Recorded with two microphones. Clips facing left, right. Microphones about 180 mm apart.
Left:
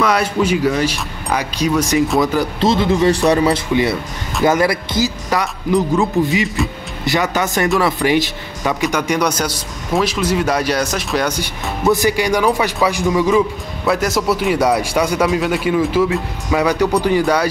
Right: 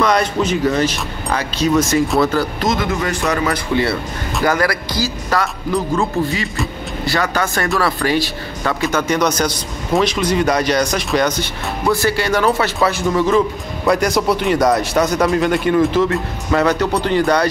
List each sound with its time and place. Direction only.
0.0 s speech: 5° left (ahead or behind)
2.6 s a man's voice: 30° left (ahead or behind)
3.4 s speech: 15° left (ahead or behind)
11.8 s speech: 20° left (ahead or behind)